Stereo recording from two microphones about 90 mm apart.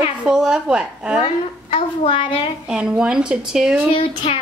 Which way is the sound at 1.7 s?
90° left.